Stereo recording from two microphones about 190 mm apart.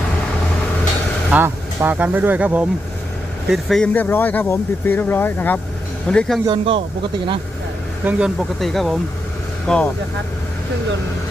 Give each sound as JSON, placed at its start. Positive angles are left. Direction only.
{"t": 1.3, "sound": "speech", "side_deg": -10}
{"t": 3.5, "sound": "speech", "side_deg": 0}
{"t": 6.4, "sound": "speech", "side_deg": -25}
{"t": 8.0, "sound": "speech", "side_deg": 0}